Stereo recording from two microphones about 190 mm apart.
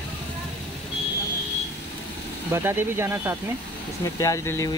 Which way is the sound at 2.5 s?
10° right (ahead or behind).